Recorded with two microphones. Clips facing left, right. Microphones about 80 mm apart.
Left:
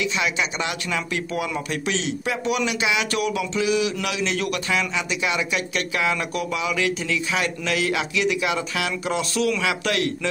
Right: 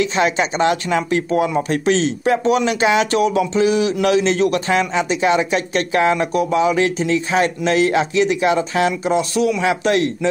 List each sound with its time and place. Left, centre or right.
0.0 s speech: right
9.6 s speech: right